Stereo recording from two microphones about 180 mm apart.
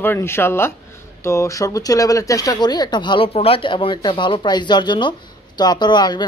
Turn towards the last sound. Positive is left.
turn(degrees=25)  # may be behind; listen again after turning